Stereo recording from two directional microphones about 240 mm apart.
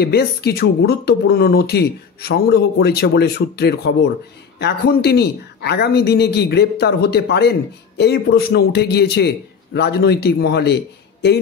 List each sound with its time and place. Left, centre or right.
0.0 s speech: left